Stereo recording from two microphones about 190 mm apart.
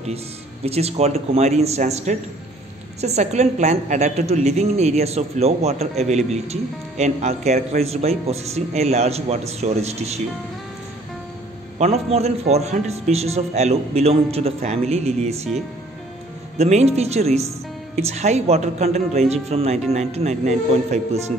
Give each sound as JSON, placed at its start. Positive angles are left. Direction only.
{"t": 0.7, "sound": "a woman's voice", "side_deg": -35}
{"t": 11.8, "sound": "a woman's voice", "side_deg": -35}
{"t": 16.5, "sound": "a woman's voice", "side_deg": -35}